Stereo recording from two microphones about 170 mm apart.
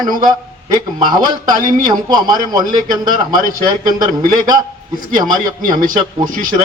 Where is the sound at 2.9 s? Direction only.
50° right (ahead or behind).